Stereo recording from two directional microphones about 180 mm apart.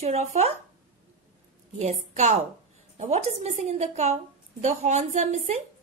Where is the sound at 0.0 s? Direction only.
35° right (ahead or behind).